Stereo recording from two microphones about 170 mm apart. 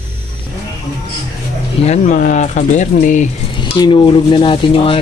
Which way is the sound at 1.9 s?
45° left (ahead or behind).